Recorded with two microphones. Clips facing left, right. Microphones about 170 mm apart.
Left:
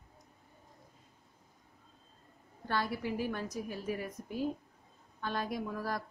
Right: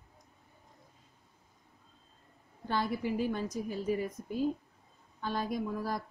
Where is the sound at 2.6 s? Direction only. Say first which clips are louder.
Right 2 dB; 15° right (ahead or behind).